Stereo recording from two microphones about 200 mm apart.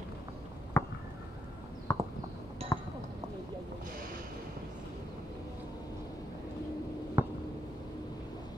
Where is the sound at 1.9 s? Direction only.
15° left (ahead or behind).